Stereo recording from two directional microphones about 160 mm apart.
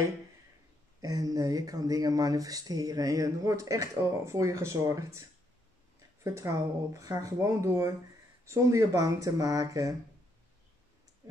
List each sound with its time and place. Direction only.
1.0 s speech: 20° right (ahead or behind)
6.2 s speech: 20° right (ahead or behind)